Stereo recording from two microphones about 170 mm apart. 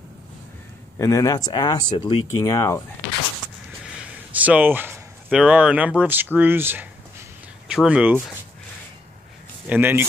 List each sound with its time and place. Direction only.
0.9 s speech: 20° left (ahead or behind)
3.8 s a sound: 5° right (ahead or behind)
6.3 s speech: 10° right (ahead or behind)
9.7 s speech: 10° right (ahead or behind)